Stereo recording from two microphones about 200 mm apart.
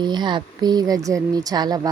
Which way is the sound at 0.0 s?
20° right (ahead or behind).